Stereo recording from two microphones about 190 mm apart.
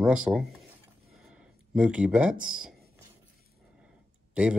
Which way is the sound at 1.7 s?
5° right (ahead or behind).